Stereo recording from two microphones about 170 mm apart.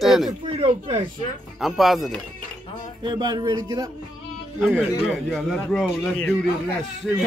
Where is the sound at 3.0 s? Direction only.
25° right (ahead or behind).